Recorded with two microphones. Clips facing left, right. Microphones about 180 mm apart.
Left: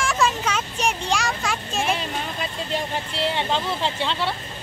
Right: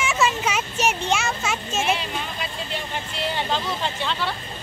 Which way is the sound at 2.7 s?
30° left (ahead or behind).